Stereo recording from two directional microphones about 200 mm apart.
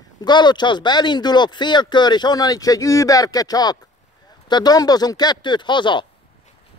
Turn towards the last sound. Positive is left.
turn(degrees=25)  # may be behind; listen again after turning